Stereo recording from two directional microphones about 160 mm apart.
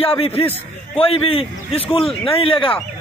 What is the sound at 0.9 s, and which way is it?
A man's voice, 35° left (ahead or behind).